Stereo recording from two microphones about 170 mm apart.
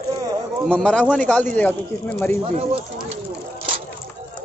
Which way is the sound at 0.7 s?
5° left (ahead or behind).